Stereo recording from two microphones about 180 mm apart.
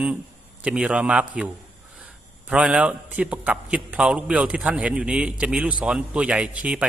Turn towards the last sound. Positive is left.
turn(degrees=-5)  # may be behind; listen again after turning